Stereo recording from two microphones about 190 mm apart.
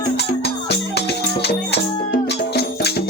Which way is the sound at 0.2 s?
60° left (ahead or behind).